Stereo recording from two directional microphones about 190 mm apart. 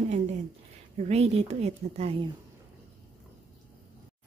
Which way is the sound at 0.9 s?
35° right (ahead or behind).